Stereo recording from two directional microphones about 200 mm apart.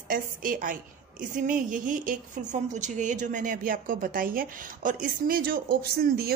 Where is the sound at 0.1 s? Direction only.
45° right (ahead or behind).